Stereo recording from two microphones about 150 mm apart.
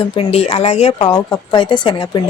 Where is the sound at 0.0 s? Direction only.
40° left (ahead or behind).